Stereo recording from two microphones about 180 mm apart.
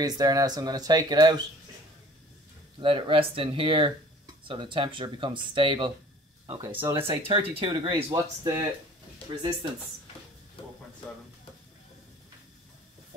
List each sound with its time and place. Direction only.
0.0 s speech: 20° right (ahead or behind)
2.8 s speech: 30° right (ahead or behind)
6.8 s speech: 15° right (ahead or behind)
7.1 s speech: 30° right (ahead or behind)
10.6 s a sound: 30° left (ahead or behind)